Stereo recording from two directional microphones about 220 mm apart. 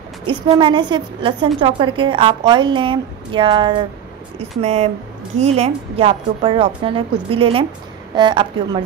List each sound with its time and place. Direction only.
0.3 s a woman's voice: 20° right (ahead or behind)